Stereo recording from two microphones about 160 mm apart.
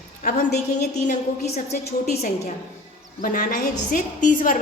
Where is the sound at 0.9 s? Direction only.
50° left (ahead or behind).